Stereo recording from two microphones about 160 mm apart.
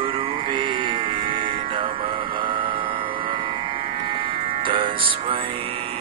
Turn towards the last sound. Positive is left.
turn(degrees=-35)  # may be behind; listen again after turning